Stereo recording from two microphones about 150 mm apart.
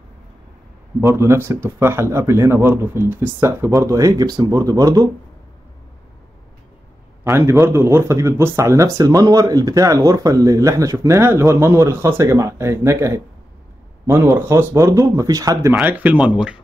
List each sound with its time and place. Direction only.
1.0 s speech: 20° right (ahead or behind)
7.2 s speech: 20° right (ahead or behind)
15.7 s speech: 10° right (ahead or behind)